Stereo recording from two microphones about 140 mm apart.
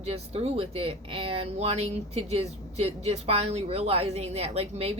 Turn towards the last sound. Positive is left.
turn(degrees=-50)  # may be behind; listen again after turning